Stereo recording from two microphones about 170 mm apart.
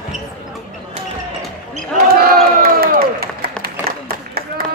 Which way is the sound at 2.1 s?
65° right (ahead or behind).